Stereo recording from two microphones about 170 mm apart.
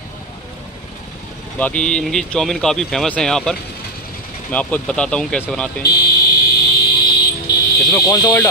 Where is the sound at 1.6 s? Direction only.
5° left (ahead or behind).